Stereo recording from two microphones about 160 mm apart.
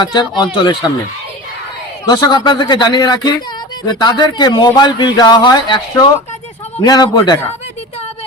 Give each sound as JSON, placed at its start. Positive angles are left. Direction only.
{"t": 0.0, "sound": "speech", "side_deg": 25}
{"t": 2.0, "sound": "speech", "side_deg": 25}